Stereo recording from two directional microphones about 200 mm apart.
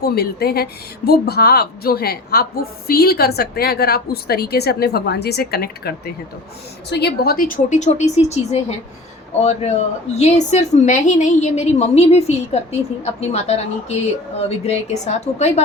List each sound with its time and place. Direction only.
0.0 s a woman's voice: 50° left (ahead or behind)
6.9 s a woman's voice: 50° left (ahead or behind); by 15.6 s 35° left (ahead or behind)